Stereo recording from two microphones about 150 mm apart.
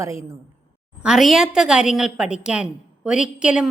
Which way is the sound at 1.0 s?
Centre (ahead or behind).